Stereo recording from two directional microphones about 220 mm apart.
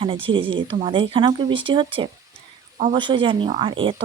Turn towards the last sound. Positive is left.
turn(degrees=-25)  # may be behind; listen again after turning